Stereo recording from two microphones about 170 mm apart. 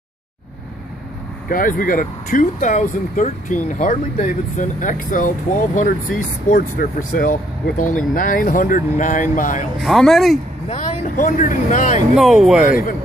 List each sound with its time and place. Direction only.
1.5 s speech: 55° left (ahead or behind)
9.8 s speech: centre (ahead or behind)
10.7 s speech: 40° left (ahead or behind)
12.2 s speech: centre (ahead or behind)
12.6 s speech: 55° left (ahead or behind)